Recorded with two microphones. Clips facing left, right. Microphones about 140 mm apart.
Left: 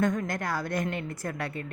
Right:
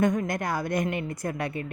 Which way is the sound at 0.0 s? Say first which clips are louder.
Right 3 dB; 15° right (ahead or behind).